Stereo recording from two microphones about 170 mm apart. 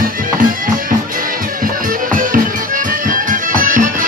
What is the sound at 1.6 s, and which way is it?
Music, 55° right (ahead or behind).